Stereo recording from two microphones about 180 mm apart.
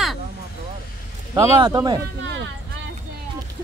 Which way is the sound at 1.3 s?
20° right (ahead or behind).